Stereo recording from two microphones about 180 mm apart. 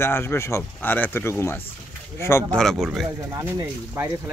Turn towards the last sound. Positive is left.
turn(degrees=-10)  # may be behind; listen again after turning